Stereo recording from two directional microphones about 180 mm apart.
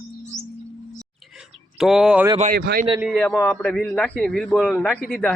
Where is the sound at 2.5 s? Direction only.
60° right (ahead or behind).